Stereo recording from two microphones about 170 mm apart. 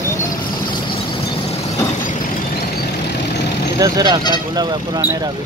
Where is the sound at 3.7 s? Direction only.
20° right (ahead or behind).